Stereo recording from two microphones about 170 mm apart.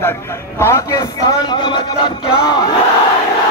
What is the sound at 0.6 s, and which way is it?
Speech, 15° left (ahead or behind).